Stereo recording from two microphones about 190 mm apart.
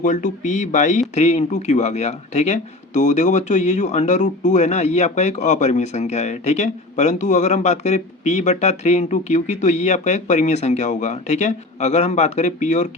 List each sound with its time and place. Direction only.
0.0 s speech: 40° left (ahead or behind)